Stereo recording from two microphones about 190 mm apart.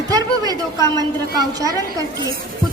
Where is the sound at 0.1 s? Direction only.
20° right (ahead or behind).